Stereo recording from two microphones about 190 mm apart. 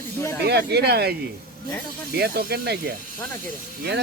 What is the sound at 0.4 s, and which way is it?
Speech, 60° right (ahead or behind).